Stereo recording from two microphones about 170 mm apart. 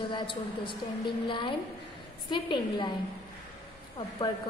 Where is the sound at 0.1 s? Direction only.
30° left (ahead or behind).